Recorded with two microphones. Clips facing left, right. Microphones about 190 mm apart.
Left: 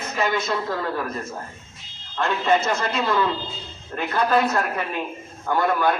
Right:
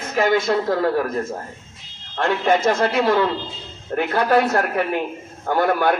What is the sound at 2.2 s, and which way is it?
A man's voice, 80° right.